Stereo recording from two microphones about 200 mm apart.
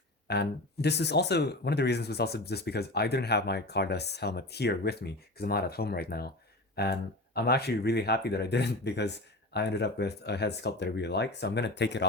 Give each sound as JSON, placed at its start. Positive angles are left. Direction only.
{"t": 0.3, "sound": "speech", "side_deg": 55}
{"t": 7.3, "sound": "speech", "side_deg": 55}